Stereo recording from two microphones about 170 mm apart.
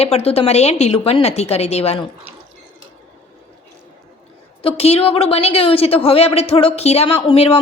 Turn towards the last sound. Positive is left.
turn(degrees=35)  # may be behind; listen again after turning